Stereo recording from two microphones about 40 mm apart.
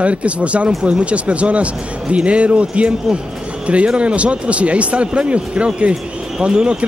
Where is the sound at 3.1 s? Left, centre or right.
Centre.